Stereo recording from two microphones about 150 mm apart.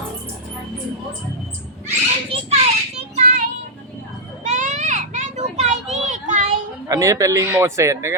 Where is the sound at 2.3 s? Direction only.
35° right (ahead or behind).